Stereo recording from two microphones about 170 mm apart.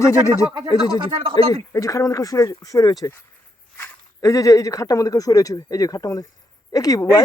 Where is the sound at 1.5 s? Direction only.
20° left (ahead or behind).